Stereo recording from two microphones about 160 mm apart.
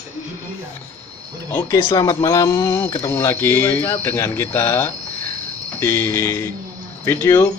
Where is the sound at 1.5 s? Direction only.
15° left (ahead or behind).